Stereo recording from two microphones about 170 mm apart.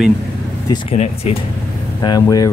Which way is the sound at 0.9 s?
40° left (ahead or behind).